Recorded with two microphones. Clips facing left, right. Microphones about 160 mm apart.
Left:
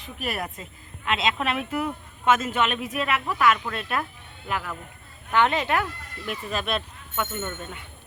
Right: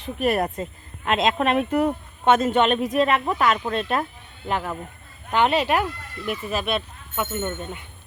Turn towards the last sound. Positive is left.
turn(degrees=-20)  # may be behind; listen again after turning